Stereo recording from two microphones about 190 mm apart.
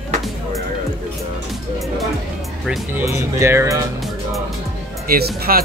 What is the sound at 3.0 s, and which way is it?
Speech, 15° right (ahead or behind).